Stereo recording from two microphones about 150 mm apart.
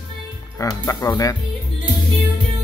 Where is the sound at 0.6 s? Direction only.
20° left (ahead or behind).